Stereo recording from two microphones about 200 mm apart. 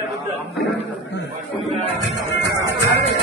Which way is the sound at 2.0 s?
60° left (ahead or behind).